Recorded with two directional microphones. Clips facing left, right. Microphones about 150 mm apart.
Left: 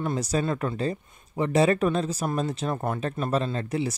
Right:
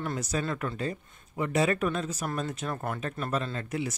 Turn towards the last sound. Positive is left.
turn(degrees=30)  # may be behind; listen again after turning